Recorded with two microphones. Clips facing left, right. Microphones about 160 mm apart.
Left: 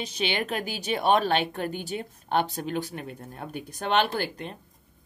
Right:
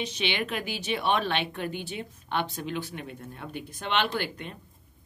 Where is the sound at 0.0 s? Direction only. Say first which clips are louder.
Left 1 dB; 40° left (ahead or behind).